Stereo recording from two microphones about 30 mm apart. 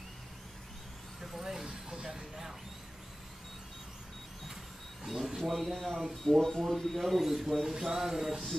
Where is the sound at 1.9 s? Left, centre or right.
Centre.